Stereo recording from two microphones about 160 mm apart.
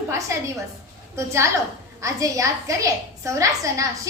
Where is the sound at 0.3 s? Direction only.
20° right (ahead or behind).